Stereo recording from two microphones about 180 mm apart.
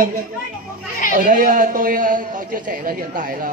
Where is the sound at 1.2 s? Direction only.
50° right (ahead or behind).